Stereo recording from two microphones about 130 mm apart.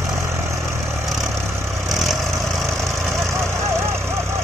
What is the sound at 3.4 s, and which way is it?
Vehicle, 20° right (ahead or behind).